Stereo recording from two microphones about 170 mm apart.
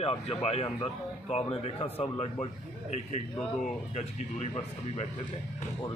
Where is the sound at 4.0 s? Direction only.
45° left (ahead or behind).